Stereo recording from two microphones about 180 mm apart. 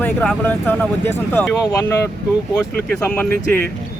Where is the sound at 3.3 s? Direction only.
55° right (ahead or behind).